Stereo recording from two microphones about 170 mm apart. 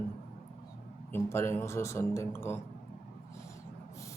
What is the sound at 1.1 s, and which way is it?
Speech, 15° left (ahead or behind).